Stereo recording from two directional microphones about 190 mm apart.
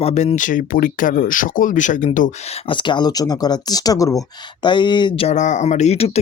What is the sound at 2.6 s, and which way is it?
Speech, 25° left (ahead or behind).